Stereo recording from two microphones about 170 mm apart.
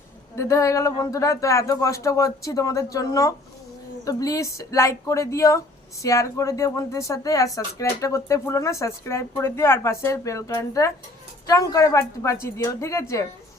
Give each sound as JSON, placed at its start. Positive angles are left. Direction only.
{"t": 0.3, "sound": "speech", "side_deg": 20}